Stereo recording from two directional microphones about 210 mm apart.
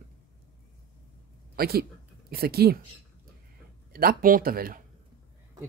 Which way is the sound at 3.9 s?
45° right (ahead or behind).